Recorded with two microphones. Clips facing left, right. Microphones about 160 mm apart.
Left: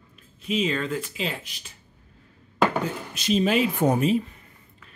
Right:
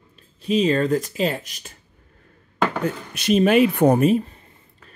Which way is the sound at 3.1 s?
60° right (ahead or behind).